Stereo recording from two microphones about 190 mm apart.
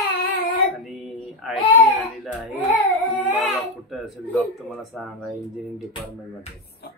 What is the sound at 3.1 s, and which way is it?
Speech, centre (ahead or behind).